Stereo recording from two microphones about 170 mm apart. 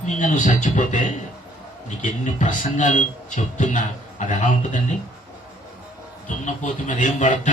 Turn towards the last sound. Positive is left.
turn(degrees=50)  # may be behind; listen again after turning